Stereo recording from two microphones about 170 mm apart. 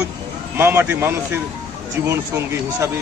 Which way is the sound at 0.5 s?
15° right (ahead or behind).